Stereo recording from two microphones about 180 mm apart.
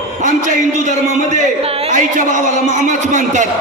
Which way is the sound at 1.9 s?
45° right (ahead or behind).